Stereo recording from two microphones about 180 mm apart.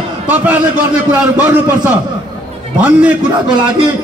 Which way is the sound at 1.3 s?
10° right (ahead or behind).